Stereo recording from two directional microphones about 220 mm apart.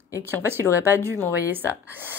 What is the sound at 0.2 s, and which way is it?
A woman's voice, 10° right (ahead or behind).